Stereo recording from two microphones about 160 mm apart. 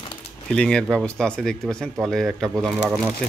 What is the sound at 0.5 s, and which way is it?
Speech, 5° left (ahead or behind).